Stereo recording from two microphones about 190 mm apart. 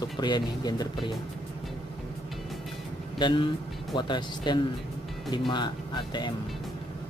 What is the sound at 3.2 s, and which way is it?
A man's voice, 25° left (ahead or behind).